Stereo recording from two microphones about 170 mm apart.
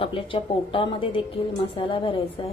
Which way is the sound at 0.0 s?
30° left (ahead or behind).